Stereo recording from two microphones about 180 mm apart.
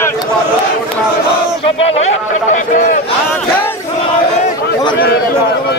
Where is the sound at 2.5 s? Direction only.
45° left (ahead or behind).